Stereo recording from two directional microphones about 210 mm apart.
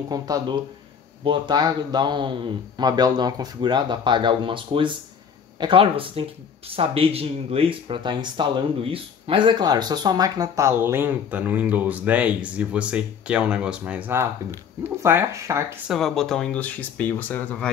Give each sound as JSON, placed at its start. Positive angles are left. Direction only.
{"t": 0.1, "sound": "speech", "side_deg": -20}
{"t": 15.9, "sound": "speech", "side_deg": 0}